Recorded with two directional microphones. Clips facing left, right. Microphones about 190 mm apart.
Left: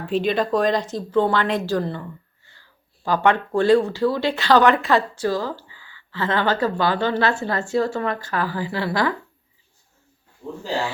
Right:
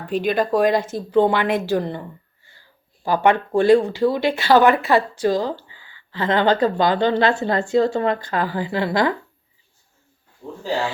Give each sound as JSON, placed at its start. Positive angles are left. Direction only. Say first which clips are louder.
{"t": 0.1, "sound": "speech", "louder": "right 1 dB", "side_deg": 0}
{"t": 2.6, "sound": "a sound", "louder": "right 3 dB", "side_deg": -15}
{"t": 3.2, "sound": "a woman's voice", "louder": "right 2 dB", "side_deg": -15}